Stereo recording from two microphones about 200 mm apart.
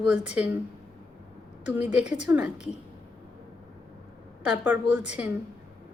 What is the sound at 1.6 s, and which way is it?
Speech, 5° right (ahead or behind).